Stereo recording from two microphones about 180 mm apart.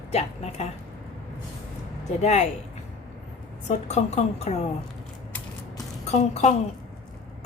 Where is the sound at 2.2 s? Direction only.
40° left (ahead or behind).